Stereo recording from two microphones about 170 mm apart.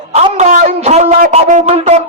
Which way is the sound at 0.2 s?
45° right (ahead or behind).